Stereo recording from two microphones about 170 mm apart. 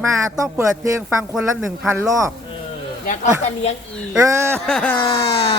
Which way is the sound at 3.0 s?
40° left (ahead or behind).